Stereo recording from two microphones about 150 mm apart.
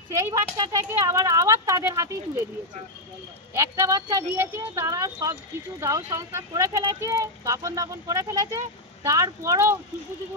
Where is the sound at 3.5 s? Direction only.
20° right (ahead or behind).